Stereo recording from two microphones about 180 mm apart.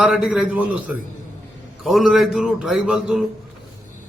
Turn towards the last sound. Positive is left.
turn(degrees=0)  # may be behind; listen again after turning